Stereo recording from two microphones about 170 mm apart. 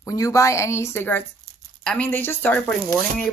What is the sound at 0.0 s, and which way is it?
Speech, 20° left (ahead or behind).